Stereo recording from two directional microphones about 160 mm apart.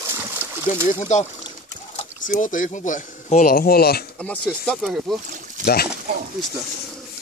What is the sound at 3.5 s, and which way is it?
Speech, 70° left (ahead or behind).